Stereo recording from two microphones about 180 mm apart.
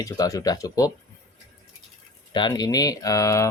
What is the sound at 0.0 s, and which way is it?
Speech, 20° left (ahead or behind).